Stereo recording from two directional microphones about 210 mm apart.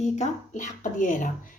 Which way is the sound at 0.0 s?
35° left (ahead or behind).